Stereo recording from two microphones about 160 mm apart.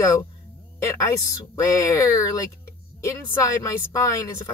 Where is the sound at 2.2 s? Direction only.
20° left (ahead or behind).